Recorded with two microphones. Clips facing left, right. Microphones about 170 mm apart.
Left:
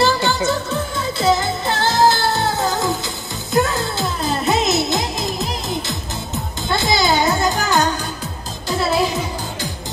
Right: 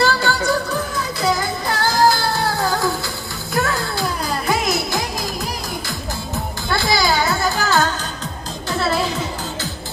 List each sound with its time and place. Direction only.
0.0 s music: 20° left (ahead or behind)